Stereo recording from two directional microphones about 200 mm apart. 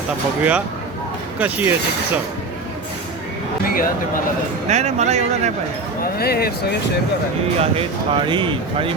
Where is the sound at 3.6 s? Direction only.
45° left (ahead or behind).